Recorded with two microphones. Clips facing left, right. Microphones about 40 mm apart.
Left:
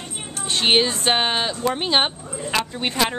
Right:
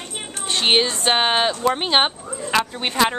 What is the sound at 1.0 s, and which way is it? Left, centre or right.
Speech, centre.